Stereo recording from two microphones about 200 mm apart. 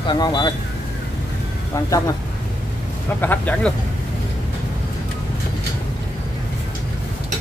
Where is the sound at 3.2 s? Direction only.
10° left (ahead or behind).